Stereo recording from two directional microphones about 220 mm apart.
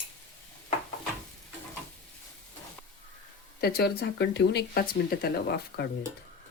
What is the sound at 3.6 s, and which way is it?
Speech, 45° left (ahead or behind).